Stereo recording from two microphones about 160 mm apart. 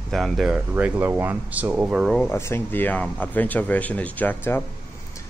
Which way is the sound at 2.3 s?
15° left (ahead or behind).